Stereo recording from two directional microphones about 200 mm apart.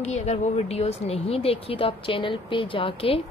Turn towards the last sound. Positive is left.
turn(degrees=25)  # may be behind; listen again after turning